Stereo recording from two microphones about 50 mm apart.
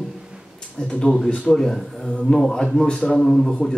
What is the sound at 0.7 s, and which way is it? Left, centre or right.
Speech, centre.